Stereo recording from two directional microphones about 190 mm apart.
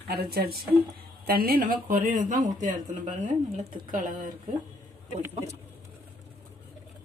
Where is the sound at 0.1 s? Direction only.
55° right (ahead or behind).